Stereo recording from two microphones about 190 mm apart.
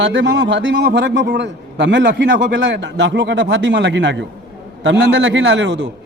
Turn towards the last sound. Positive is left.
turn(degrees=-75)  # may be behind; listen again after turning